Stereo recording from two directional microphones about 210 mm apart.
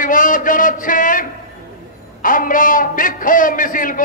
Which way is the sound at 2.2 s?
40° left (ahead or behind).